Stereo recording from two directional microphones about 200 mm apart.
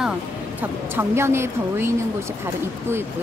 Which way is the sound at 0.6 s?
10° right (ahead or behind).